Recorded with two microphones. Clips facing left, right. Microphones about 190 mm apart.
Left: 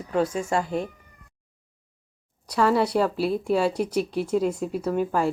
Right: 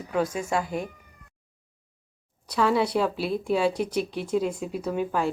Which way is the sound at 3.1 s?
40° left (ahead or behind).